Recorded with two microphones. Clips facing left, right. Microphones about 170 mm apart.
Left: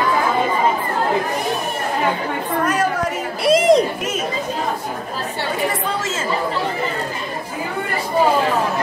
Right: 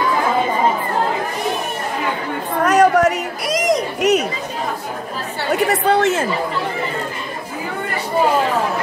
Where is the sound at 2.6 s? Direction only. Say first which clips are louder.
Right 9 dB; 75° right (ahead or behind).